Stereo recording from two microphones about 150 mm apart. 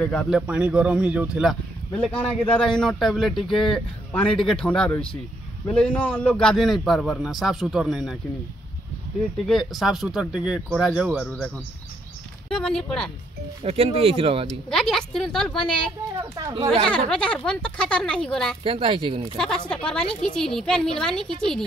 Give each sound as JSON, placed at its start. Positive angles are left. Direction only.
{"t": 0.0, "sound": "a man's voice", "side_deg": 5}
{"t": 2.0, "sound": "a man's voice", "side_deg": 10}
{"t": 9.5, "sound": "a man's voice", "side_deg": 0}
{"t": 11.2, "sound": "a man's voice", "side_deg": 5}
{"t": 13.7, "sound": "speech", "side_deg": -40}
{"t": 14.5, "sound": "a man's voice", "side_deg": 5}
{"t": 16.2, "sound": "speech", "side_deg": -20}
{"t": 16.5, "sound": "speech", "side_deg": -45}
{"t": 17.1, "sound": "speech", "side_deg": 5}
{"t": 18.6, "sound": "speech", "side_deg": -35}
{"t": 19.3, "sound": "a man's voice", "side_deg": 5}